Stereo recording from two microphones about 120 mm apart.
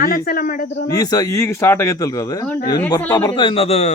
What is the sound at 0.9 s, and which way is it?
A man's voice, 30° left (ahead or behind).